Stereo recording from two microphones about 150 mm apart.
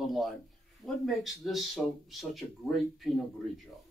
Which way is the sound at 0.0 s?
Centre (ahead or behind).